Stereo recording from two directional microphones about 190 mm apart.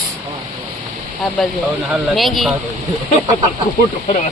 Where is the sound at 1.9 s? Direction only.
Centre (ahead or behind).